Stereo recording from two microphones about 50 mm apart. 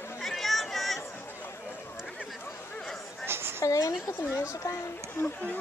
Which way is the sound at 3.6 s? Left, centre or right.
Left.